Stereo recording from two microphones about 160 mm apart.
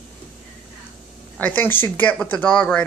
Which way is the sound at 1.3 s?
10° left (ahead or behind).